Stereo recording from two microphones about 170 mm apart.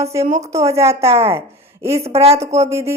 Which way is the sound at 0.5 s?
20° right (ahead or behind).